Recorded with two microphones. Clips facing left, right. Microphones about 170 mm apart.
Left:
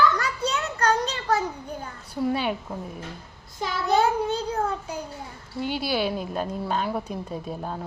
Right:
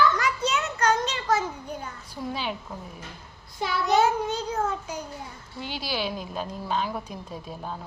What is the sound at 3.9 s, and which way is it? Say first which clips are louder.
A child's voice: left 1 dB; 35° left (ahead or behind).